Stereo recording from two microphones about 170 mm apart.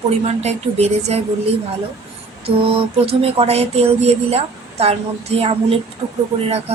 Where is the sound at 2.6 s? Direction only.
35° right (ahead or behind).